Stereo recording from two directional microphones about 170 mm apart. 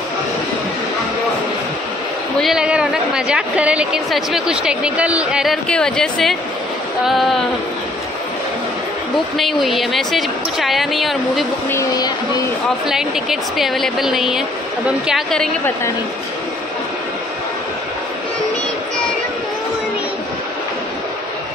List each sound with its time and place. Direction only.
2.4 s a woman's voice: 5° right (ahead or behind)
9.4 s a woman's voice: centre (ahead or behind)
11.7 s speech: 20° left (ahead or behind)
12.6 s a woman's voice: 5° right (ahead or behind)